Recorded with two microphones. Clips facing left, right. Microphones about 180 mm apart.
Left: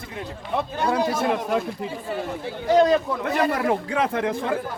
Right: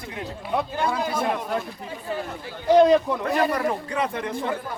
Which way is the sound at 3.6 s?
90° left.